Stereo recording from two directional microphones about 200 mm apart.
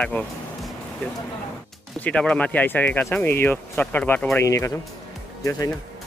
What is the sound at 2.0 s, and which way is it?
Speech, 5° left (ahead or behind).